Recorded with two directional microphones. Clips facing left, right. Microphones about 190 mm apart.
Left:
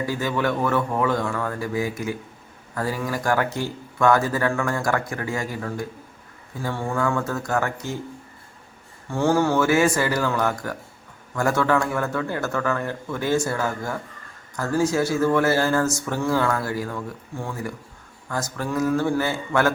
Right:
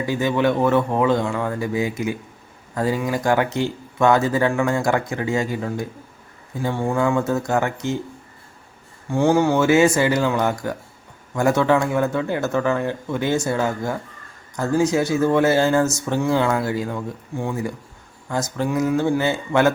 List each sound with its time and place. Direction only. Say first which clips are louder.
0.0 s speech: right 4 dB; 20° right (ahead or behind)
9.0 s speech: right 3 dB; 15° right (ahead or behind)